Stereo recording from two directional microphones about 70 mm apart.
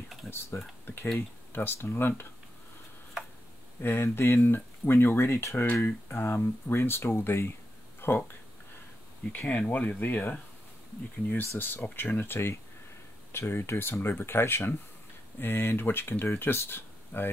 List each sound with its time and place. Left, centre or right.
0.3 s speech: left
3.8 s speech: left
5.9 s speech: left
9.5 s speech: left